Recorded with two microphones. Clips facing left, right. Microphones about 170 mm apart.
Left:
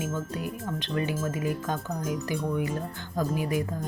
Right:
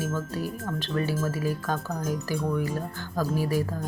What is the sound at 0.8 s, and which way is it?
Speech, 20° left (ahead or behind).